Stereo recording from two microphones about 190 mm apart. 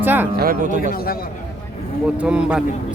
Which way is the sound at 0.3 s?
50° right (ahead or behind).